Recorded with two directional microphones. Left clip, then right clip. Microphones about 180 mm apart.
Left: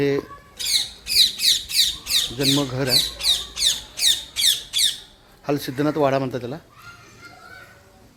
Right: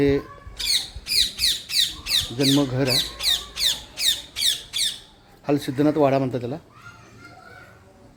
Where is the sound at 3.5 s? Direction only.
30° right (ahead or behind).